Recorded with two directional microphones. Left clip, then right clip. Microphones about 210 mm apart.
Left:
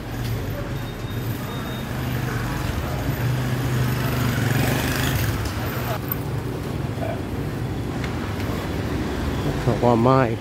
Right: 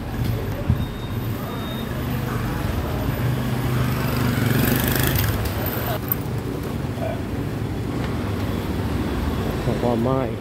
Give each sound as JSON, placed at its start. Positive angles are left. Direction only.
{"t": 9.8, "sound": "speech", "side_deg": 30}